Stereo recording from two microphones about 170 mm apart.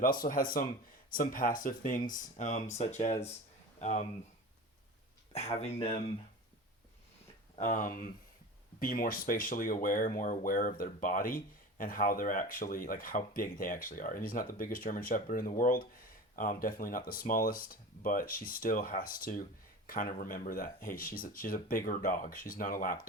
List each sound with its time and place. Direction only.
0.0 s speech: 55° left (ahead or behind)
5.3 s speech: 40° left (ahead or behind)
7.5 s speech: 45° left (ahead or behind)